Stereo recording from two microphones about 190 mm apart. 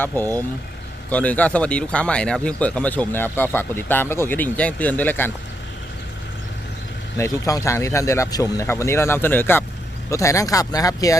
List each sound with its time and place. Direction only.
0.1 s speech: 10° left (ahead or behind)
7.2 s speech: 15° left (ahead or behind)